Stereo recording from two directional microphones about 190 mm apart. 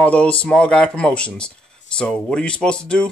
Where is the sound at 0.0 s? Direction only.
5° left (ahead or behind).